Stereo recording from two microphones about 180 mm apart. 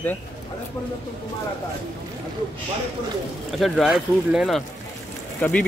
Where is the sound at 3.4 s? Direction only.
Centre (ahead or behind).